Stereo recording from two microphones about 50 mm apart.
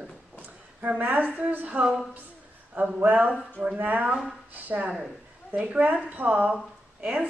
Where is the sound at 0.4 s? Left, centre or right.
Right.